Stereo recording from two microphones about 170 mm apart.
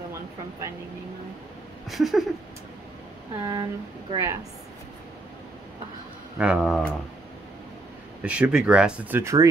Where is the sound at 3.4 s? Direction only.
20° right (ahead or behind).